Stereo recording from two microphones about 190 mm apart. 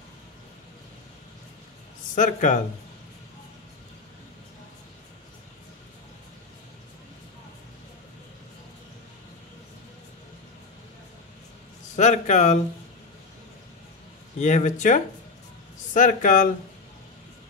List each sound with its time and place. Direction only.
2.1 s a man's voice: 40° left (ahead or behind)
11.9 s a man's voice: 40° left (ahead or behind)
14.4 s a man's voice: 40° left (ahead or behind)